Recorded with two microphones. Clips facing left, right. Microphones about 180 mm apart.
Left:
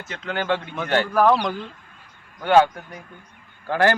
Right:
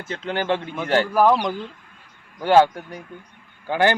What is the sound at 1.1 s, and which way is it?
Speech, 10° right (ahead or behind).